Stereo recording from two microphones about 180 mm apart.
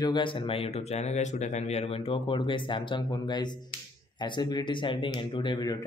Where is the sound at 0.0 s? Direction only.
25° left (ahead or behind).